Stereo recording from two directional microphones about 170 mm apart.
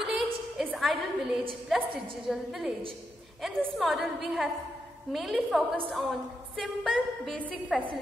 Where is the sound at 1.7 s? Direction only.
Centre (ahead or behind).